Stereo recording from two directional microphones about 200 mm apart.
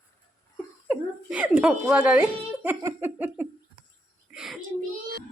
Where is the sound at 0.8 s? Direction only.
5° right (ahead or behind).